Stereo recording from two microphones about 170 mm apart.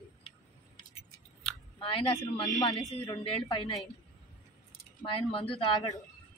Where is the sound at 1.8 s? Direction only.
30° left (ahead or behind).